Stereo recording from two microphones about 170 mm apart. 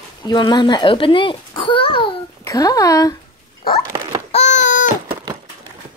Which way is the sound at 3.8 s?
25° right (ahead or behind).